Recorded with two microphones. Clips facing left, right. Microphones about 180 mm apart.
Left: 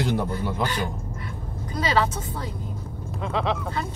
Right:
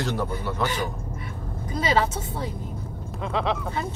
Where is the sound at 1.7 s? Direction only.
25° right (ahead or behind).